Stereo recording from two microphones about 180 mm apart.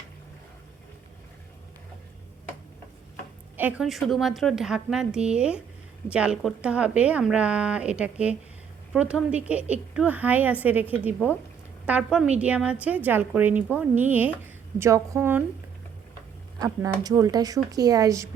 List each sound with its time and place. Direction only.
3.6 s a woman's voice: 5° right (ahead or behind)
16.6 s speech: 20° right (ahead or behind)